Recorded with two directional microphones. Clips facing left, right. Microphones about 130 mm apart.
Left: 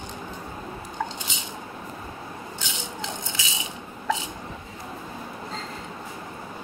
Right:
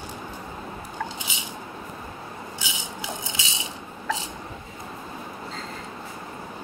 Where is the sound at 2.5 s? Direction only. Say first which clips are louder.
Even; 10° right (ahead or behind).